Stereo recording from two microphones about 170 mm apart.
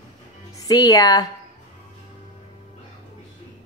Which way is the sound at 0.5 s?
20° left (ahead or behind).